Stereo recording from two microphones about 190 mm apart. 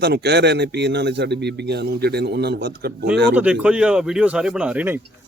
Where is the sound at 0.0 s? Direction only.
60° right (ahead or behind).